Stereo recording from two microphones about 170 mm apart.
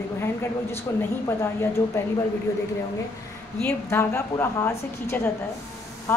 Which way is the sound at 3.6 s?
10° left (ahead or behind).